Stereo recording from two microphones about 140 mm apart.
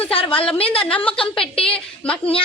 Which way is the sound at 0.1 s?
40° left (ahead or behind).